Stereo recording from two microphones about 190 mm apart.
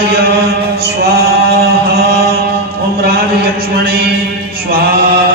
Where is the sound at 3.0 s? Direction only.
55° right (ahead or behind).